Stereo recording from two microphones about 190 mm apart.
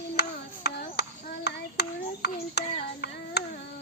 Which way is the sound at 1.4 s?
60° left (ahead or behind).